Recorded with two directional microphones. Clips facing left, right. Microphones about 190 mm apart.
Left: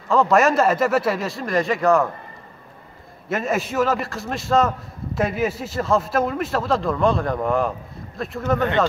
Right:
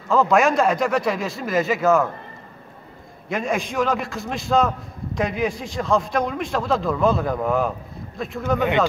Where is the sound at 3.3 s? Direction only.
5° left (ahead or behind).